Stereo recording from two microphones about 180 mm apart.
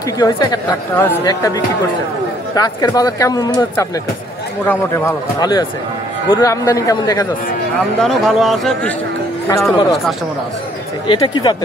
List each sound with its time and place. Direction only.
0.2 s speech: 20° left (ahead or behind)
4.9 s speech: 20° left (ahead or behind)
8.0 s speech: centre (ahead or behind)
9.5 s speech: 10° left (ahead or behind)
11.1 s speech: 25° left (ahead or behind)